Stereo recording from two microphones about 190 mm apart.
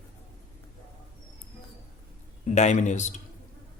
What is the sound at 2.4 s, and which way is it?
Speech, 40° left (ahead or behind).